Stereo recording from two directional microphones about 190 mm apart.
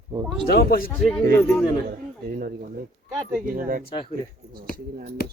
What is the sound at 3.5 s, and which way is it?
Speech, 50° right (ahead or behind).